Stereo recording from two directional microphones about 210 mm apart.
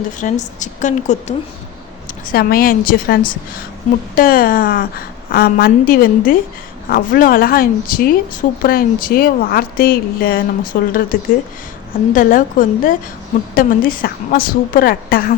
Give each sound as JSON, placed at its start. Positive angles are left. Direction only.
{"t": 0.2, "sound": "a woman's voice", "side_deg": 40}
{"t": 2.3, "sound": "a woman's voice", "side_deg": 45}